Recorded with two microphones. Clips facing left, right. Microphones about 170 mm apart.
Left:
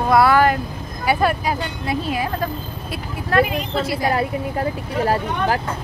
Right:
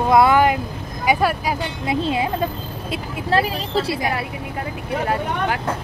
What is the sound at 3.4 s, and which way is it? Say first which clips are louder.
Speech: left 2 dB; 35° right (ahead or behind).